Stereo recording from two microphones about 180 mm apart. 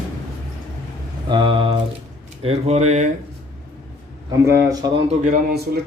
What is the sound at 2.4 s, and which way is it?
Speech, 35° right (ahead or behind).